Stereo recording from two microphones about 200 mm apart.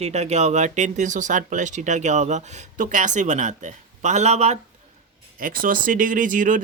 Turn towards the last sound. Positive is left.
turn(degrees=-40)  # may be behind; listen again after turning